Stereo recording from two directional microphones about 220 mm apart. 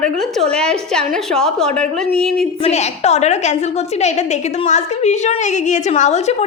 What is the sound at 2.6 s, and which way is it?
Speech, 30° left (ahead or behind).